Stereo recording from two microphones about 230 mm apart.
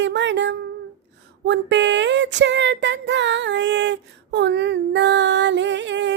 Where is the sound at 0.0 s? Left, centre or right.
Right.